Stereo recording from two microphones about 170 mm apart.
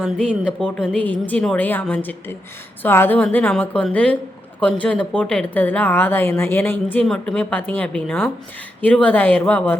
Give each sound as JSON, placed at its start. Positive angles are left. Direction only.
{"t": 0.0, "sound": "speech", "side_deg": 5}